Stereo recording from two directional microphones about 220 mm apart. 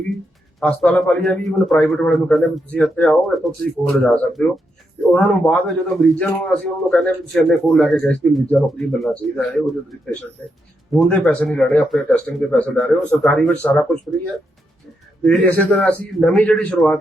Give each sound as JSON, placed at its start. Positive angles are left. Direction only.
{"t": 0.6, "sound": "a man's voice", "side_deg": 0}
{"t": 10.9, "sound": "a man's voice", "side_deg": 0}
{"t": 15.2, "sound": "a man's voice", "side_deg": 5}